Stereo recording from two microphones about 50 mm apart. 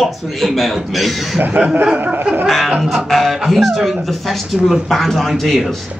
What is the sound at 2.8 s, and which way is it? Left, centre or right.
Speech, centre.